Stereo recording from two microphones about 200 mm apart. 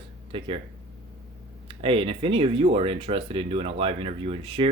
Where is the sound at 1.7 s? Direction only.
25° right (ahead or behind).